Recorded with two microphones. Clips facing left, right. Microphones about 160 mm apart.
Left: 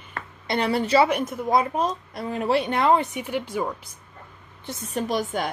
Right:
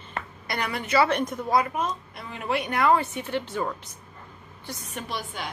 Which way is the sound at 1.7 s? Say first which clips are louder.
Left 4 dB; 35° left (ahead or behind).